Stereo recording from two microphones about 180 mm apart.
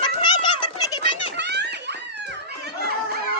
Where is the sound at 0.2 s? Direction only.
25° left (ahead or behind).